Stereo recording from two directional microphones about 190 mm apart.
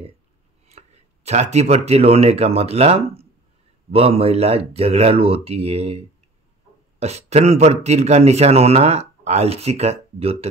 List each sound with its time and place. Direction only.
0.7 s speech: 35° right (ahead or behind)